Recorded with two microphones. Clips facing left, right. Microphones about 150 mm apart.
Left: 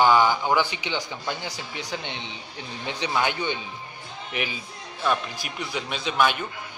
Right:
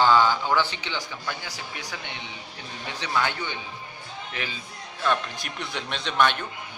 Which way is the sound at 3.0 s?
20° left (ahead or behind).